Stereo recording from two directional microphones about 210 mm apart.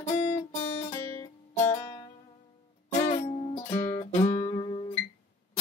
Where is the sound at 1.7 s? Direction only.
20° left (ahead or behind).